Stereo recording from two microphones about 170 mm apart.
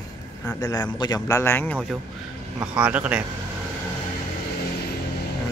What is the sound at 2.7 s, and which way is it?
Speech, 10° right (ahead or behind).